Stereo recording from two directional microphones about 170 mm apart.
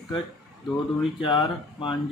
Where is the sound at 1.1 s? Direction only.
30° left (ahead or behind).